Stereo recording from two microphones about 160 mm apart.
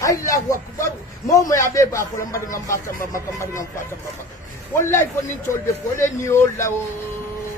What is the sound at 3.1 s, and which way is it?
Speech, 20° left (ahead or behind).